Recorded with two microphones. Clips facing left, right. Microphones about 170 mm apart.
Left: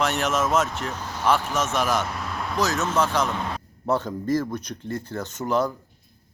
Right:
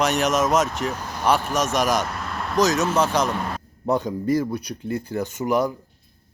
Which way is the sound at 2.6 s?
20° right (ahead or behind).